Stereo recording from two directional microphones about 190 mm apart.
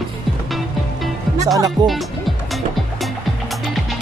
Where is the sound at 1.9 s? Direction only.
Centre (ahead or behind).